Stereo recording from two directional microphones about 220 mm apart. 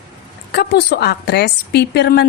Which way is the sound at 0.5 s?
45° left (ahead or behind).